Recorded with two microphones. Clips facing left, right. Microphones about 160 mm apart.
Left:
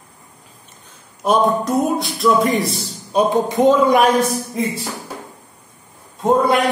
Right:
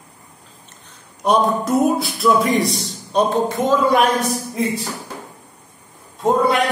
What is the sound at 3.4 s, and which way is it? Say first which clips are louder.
Speech: left 4 dB; 20° left (ahead or behind).